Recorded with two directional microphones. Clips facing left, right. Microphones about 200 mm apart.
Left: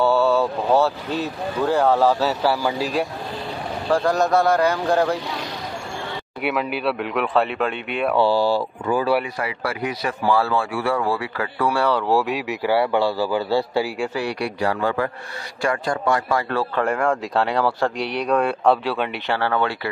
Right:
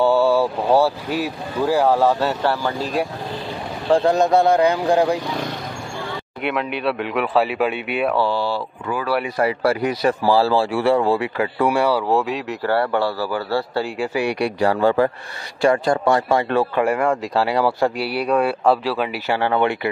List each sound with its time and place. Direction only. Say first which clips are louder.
0.0 s speech: right 2 dB; 15° right (ahead or behind); by 3.1 s 5° left (ahead or behind)
3.9 s speech: right 3 dB; 25° right (ahead or behind)
6.4 s speech: even; centre (ahead or behind)
8.2 s speech: left 3 dB; 35° left (ahead or behind)
8.8 s speech: left 4 dB; 25° left (ahead or behind)
9.4 s speech: right 7 dB; 40° right (ahead or behind); by 12.0 s 15° right (ahead or behind)
12.1 s a man's voice: even; centre (ahead or behind)
13.8 s speech: right 1 dB; centre (ahead or behind)
14.1 s speech: right 4 dB; 15° right (ahead or behind)
14.6 s a man's voice: right 6 dB; 30° right (ahead or behind)
16.8 s speech: right 2 dB; 5° right (ahead or behind)
19.3 s speech: right 3 dB; 15° right (ahead or behind)